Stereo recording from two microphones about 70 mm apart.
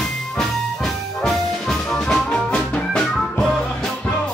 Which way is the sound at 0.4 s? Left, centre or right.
Centre.